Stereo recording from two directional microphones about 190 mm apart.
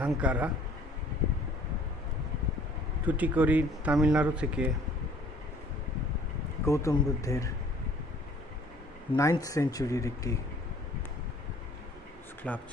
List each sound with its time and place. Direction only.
0.0 s speech: 5° right (ahead or behind)
3.1 s speech: 10° right (ahead or behind)
6.6 s speech: 15° left (ahead or behind)
9.1 s speech: 15° left (ahead or behind)
12.4 s speech: 5° left (ahead or behind)